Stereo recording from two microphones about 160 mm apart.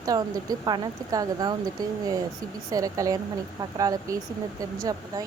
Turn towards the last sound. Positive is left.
turn(degrees=-20)  # may be behind; listen again after turning